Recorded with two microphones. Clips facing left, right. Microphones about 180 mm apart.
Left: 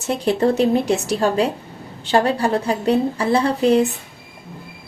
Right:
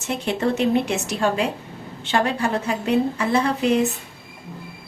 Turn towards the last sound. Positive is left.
turn(degrees=35)  # may be behind; listen again after turning